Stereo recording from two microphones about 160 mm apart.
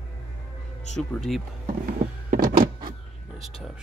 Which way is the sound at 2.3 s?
60° right (ahead or behind).